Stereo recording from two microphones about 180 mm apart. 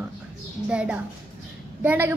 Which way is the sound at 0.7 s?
5° right (ahead or behind).